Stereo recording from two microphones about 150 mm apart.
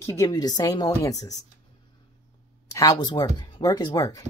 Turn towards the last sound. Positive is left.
turn(degrees=25)  # may be behind; listen again after turning